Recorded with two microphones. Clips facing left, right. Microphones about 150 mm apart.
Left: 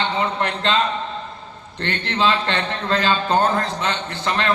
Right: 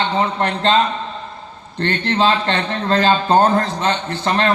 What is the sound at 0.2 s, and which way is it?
Speech, 40° right (ahead or behind).